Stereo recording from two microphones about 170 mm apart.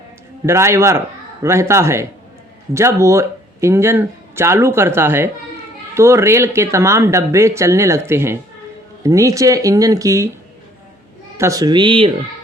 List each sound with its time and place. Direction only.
0.4 s speech: 15° right (ahead or behind)
11.3 s speech: 20° right (ahead or behind)